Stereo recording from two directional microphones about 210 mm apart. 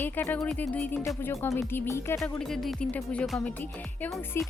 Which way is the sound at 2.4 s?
Centre (ahead or behind).